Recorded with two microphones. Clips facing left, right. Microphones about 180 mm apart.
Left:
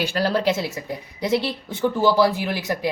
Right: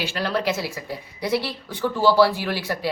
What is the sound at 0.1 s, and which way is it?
Speech, 35° left (ahead or behind).